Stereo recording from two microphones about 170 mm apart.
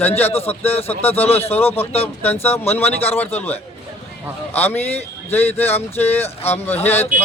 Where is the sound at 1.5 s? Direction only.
10° left (ahead or behind).